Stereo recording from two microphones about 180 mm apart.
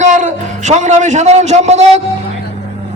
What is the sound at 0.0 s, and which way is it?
A man's voice, 40° right (ahead or behind).